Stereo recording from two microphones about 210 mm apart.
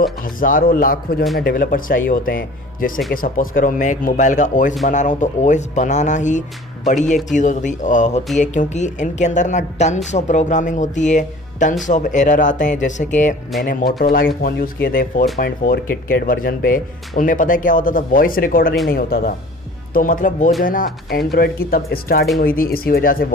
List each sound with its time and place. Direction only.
0.0 s speech: 40° left (ahead or behind)